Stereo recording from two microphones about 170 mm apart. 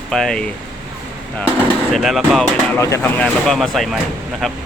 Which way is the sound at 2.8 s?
15° left (ahead or behind).